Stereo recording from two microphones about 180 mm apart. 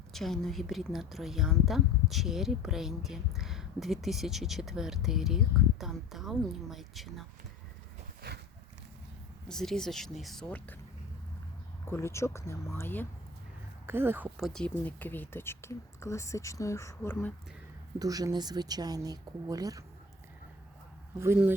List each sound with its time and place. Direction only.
0.1 s speech: centre (ahead or behind)
9.5 s speech: 5° left (ahead or behind)
11.9 s speech: 15° left (ahead or behind)
13.8 s speech: 10° right (ahead or behind); by 17.3 s 15° left (ahead or behind)
18.0 s speech: 20° right (ahead or behind)
21.2 s speech: 10° right (ahead or behind)